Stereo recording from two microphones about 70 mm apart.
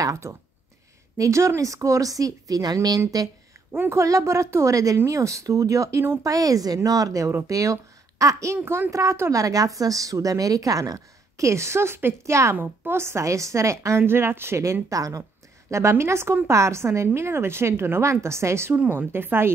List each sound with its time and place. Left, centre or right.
0.0 s speech: right
3.7 s a woman's voice: right
4.0 s a woman's voice: right
6.2 s speech: right
8.5 s a woman's voice: right
8.9 s a woman's voice: right
9.3 s a woman's voice: right
15.7 s a woman's voice: right